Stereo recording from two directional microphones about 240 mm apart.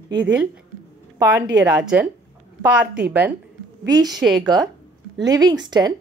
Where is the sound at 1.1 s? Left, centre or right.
Centre.